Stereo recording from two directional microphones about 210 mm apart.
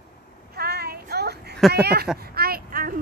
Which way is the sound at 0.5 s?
50° right (ahead or behind).